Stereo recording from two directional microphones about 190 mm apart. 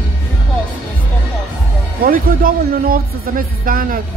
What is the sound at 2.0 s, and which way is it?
Speech, 50° right (ahead or behind).